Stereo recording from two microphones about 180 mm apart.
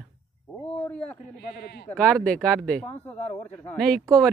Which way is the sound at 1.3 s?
60° left (ahead or behind).